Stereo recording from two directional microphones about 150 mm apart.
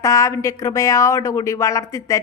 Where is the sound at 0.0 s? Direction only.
20° left (ahead or behind).